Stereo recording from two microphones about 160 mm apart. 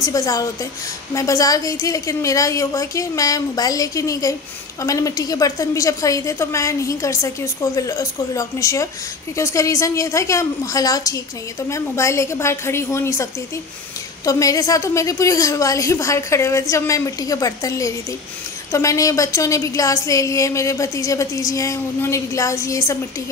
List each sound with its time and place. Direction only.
0.0 s a woman's voice: 20° left (ahead or behind)